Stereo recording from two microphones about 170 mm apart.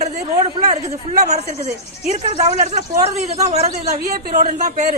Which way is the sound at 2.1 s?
40° right (ahead or behind).